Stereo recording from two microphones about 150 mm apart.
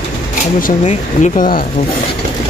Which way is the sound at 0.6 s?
60° left (ahead or behind).